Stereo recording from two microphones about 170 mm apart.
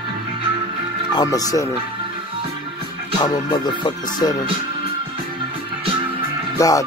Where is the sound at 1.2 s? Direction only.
20° left (ahead or behind).